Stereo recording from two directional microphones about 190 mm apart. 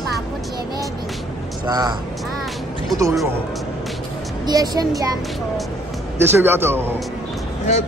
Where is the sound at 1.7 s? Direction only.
20° right (ahead or behind).